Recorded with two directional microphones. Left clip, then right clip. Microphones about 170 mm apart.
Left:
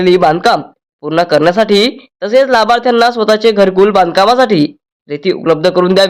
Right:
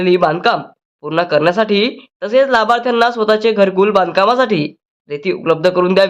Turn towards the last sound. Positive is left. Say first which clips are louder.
# left 3 dB
turn(degrees=25)  # may be behind; listen again after turning